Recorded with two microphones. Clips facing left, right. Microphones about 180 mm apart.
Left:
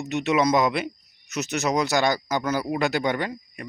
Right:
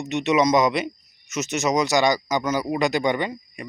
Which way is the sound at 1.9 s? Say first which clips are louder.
Right 2 dB; 15° right (ahead or behind).